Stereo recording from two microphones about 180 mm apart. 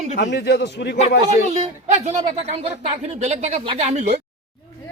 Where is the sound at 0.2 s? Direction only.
70° left (ahead or behind).